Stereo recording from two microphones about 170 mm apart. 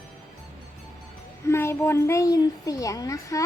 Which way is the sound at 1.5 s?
15° left (ahead or behind).